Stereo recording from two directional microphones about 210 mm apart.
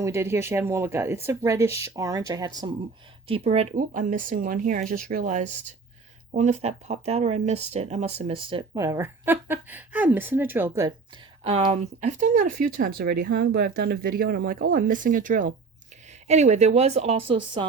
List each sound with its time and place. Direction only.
0.0 s speech: 10° right (ahead or behind)